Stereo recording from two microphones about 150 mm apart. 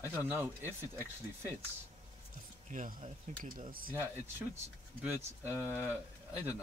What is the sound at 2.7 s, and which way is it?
Speech, 55° right (ahead or behind).